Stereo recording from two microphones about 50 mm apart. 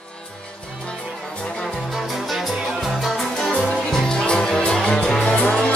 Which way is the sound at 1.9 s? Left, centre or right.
Centre.